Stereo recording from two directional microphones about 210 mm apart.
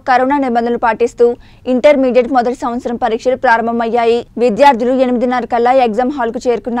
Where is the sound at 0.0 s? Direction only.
Centre (ahead or behind).